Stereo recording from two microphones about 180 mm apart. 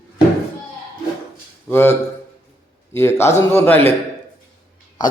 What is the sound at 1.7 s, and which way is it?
Speech, 10° left (ahead or behind).